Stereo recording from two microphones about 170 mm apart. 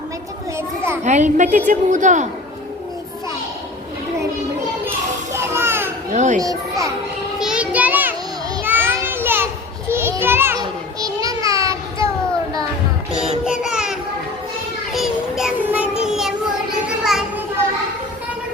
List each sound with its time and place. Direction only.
0.5 s children playing: 15° right (ahead or behind)
1.0 s a woman's voice: 45° right (ahead or behind)
5.3 s music: 15° right (ahead or behind)
6.1 s a woman's voice: 45° right (ahead or behind)
6.4 s a child's voice: 20° right (ahead or behind)
7.3 s a sound: 5° right (ahead or behind)
9.9 s children playing: 15° right (ahead or behind)
11.0 s a sound: 20° right (ahead or behind)
13.4 s child singing: 5° right (ahead or behind)
14.9 s child singing: centre (ahead or behind)
17.0 s children playing: 5° right (ahead or behind)